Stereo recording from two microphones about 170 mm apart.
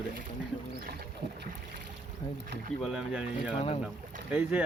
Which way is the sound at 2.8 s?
5° right (ahead or behind).